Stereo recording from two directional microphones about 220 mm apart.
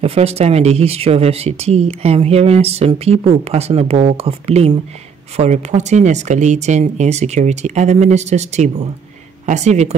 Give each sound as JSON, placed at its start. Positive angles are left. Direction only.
{"t": 0.0, "sound": "speech", "side_deg": -25}